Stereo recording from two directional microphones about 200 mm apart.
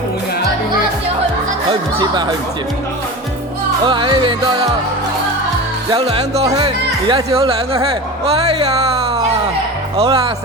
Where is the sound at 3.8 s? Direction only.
25° right (ahead or behind).